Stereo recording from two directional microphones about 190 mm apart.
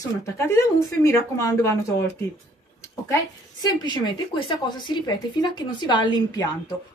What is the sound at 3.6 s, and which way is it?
A woman's voice, 25° left (ahead or behind).